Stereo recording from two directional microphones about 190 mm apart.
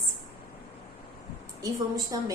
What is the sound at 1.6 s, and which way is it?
Speech, 20° right (ahead or behind).